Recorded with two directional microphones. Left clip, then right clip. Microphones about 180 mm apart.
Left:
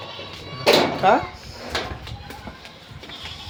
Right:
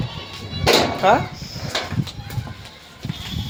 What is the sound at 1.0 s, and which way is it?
Speech, 30° right (ahead or behind).